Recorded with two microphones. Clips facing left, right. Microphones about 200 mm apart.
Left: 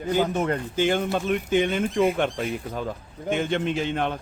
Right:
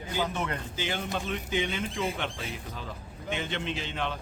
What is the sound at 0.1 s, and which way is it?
Speech, 50° left (ahead or behind).